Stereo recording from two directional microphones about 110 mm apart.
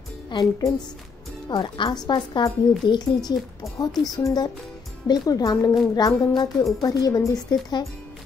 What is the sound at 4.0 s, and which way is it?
Speech, 35° left (ahead or behind).